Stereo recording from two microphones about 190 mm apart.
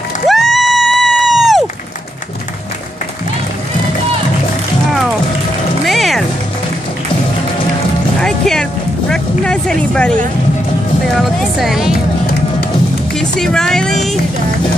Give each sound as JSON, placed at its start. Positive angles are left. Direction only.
{"t": 0.3, "sound": "music", "side_deg": 0}
{"t": 5.9, "sound": "music", "side_deg": 0}
{"t": 8.2, "sound": "music", "side_deg": 5}
{"t": 9.1, "sound": "vehicle", "side_deg": 5}
{"t": 11.1, "sound": "music", "side_deg": 0}
{"t": 13.1, "sound": "speech", "side_deg": 5}